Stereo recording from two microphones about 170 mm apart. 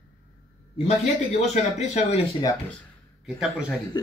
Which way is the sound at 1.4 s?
40° left (ahead or behind).